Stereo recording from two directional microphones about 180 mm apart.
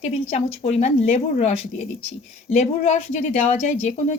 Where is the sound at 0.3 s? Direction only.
35° left (ahead or behind).